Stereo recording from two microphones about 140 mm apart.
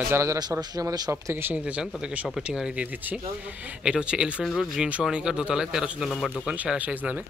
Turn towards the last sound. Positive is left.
turn(degrees=-10)  # may be behind; listen again after turning